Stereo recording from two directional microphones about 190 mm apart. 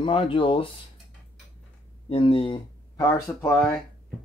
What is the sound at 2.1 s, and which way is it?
Speech, 30° left (ahead or behind).